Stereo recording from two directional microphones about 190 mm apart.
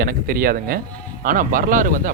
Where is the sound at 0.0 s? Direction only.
50° right (ahead or behind).